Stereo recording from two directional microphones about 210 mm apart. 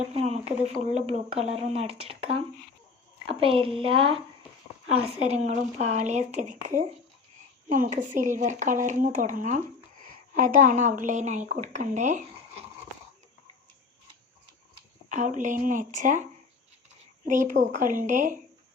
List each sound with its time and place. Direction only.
0.0 s speech: 30° right (ahead or behind)
15.1 s speech: 35° right (ahead or behind)
17.2 s speech: 35° right (ahead or behind)